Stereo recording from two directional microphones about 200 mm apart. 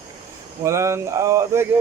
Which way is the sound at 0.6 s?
15° right (ahead or behind).